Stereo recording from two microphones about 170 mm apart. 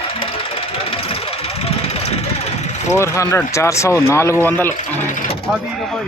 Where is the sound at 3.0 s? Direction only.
15° left (ahead or behind).